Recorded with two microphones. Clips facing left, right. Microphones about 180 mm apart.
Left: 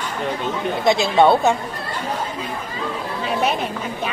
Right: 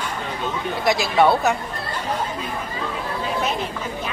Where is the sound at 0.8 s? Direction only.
25° left (ahead or behind).